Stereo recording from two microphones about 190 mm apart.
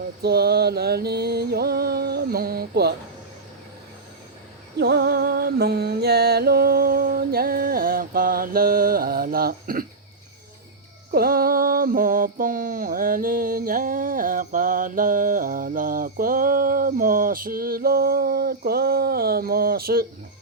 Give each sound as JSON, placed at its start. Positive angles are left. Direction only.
{"t": 0.2, "sound": "music", "side_deg": -55}
{"t": 4.8, "sound": "music", "side_deg": -55}
{"t": 11.1, "sound": "mantra", "side_deg": -50}